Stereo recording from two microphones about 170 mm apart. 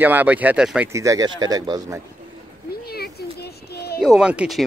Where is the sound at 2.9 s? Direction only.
70° left (ahead or behind).